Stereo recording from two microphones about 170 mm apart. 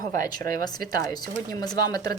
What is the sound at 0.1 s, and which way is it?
Speech, 20° left (ahead or behind).